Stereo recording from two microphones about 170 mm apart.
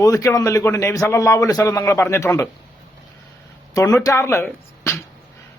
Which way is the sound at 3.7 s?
20° left (ahead or behind).